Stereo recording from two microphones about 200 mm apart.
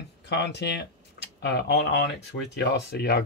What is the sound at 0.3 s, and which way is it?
Speech, 60° left (ahead or behind).